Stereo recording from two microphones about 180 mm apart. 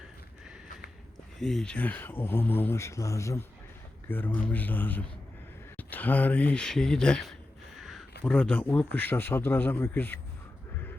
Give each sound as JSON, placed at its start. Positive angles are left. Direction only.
{"t": 1.4, "sound": "speech", "side_deg": 0}
{"t": 7.8, "sound": "a sound", "side_deg": 0}
{"t": 8.2, "sound": "speech", "side_deg": 5}